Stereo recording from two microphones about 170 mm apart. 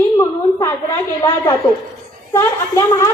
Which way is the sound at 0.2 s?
20° left (ahead or behind).